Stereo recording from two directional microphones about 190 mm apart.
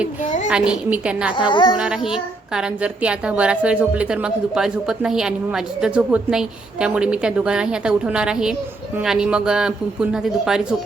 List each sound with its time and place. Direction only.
0.5 s a woman's voice: 5° right (ahead or behind)
1.4 s speech: 25° left (ahead or behind)
1.8 s a woman's voice: 5° right (ahead or behind)